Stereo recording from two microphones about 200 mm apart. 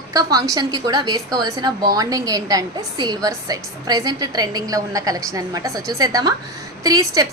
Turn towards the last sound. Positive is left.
turn(degrees=-20)  # may be behind; listen again after turning